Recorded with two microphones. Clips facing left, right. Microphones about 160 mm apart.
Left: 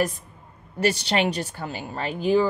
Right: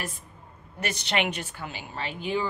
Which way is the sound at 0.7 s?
30° left (ahead or behind).